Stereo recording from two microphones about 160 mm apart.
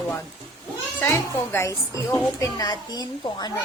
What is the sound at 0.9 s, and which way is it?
A woman's voice, 15° left (ahead or behind).